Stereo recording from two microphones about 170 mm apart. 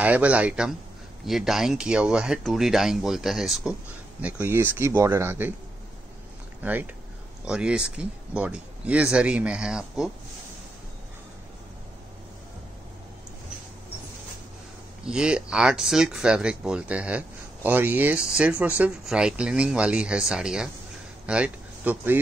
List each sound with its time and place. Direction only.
0.0 s speech: 10° right (ahead or behind)
6.6 s speech: 10° right (ahead or behind)
15.0 s speech: 5° right (ahead or behind)